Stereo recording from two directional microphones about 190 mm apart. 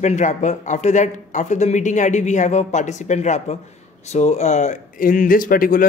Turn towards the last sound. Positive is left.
turn(degrees=45)  # may be behind; listen again after turning